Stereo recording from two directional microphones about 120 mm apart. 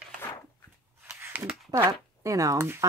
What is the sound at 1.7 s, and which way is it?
Speech, 25° right (ahead or behind).